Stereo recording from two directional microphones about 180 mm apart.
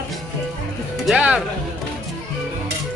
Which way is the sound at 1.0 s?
5° right (ahead or behind).